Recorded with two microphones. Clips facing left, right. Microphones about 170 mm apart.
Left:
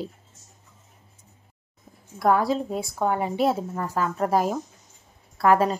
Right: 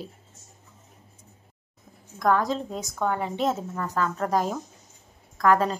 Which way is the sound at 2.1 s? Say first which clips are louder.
Left 2 dB; 5° left (ahead or behind).